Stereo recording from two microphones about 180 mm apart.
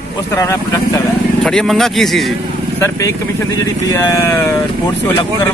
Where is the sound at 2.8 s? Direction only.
15° left (ahead or behind).